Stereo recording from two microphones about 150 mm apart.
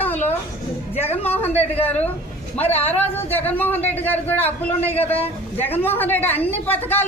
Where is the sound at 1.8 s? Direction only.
10° left (ahead or behind).